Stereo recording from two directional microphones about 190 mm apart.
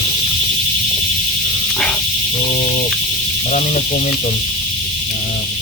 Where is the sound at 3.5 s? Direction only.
40° left (ahead or behind).